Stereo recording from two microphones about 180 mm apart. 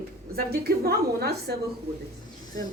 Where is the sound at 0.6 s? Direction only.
60° right (ahead or behind).